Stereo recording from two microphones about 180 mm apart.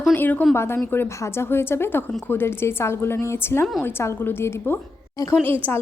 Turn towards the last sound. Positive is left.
turn(degrees=-10)  # may be behind; listen again after turning